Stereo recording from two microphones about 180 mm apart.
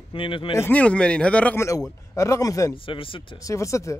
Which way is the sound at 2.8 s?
30° left (ahead or behind).